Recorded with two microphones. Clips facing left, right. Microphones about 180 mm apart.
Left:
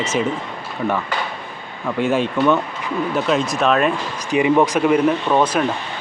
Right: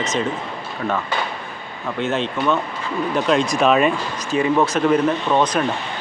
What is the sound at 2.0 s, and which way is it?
Speech, 10° left (ahead or behind).